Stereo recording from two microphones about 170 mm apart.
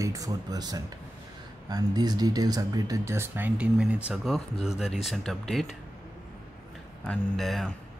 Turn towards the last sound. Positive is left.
turn(degrees=0)  # may be behind; listen again after turning